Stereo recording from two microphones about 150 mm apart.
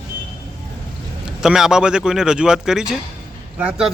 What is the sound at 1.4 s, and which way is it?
Speech, 5° right (ahead or behind).